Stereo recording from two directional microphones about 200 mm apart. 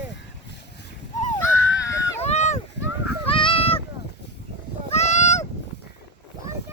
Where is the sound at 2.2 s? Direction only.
35° left (ahead or behind).